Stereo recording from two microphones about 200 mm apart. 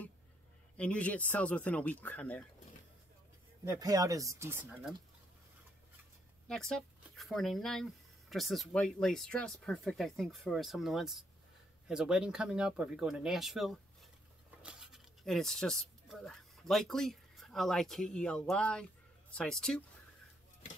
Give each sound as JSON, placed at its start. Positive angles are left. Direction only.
{"t": 0.7, "sound": "speech", "side_deg": 5}
{"t": 3.6, "sound": "speech", "side_deg": -15}
{"t": 6.4, "sound": "speech", "side_deg": 5}